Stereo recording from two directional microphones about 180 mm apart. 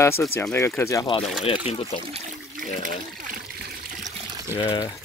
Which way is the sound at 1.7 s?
35° left (ahead or behind).